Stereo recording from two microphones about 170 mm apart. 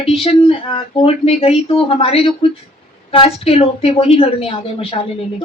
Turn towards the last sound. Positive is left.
turn(degrees=35)  # may be behind; listen again after turning